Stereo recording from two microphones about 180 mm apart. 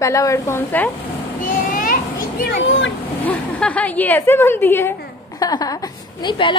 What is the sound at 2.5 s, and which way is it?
Speech, 90° left.